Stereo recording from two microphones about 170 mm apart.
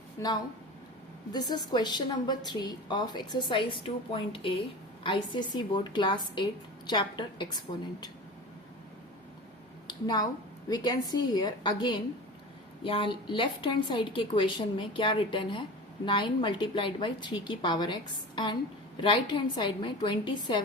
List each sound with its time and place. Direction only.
0.2 s a woman's voice: 20° left (ahead or behind)
9.8 s a sound: 25° left (ahead or behind)
10.7 s a woman's voice: 25° left (ahead or behind)